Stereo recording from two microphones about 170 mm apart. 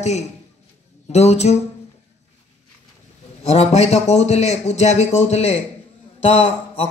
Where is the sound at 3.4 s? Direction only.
40° left (ahead or behind).